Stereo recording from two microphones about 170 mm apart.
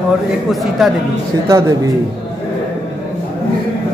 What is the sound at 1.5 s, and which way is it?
Speech, 20° right (ahead or behind).